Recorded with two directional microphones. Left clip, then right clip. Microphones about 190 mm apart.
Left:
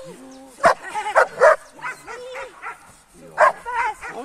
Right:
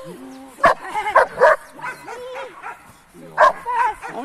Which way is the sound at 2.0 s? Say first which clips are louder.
Right 2 dB; 30° right (ahead or behind).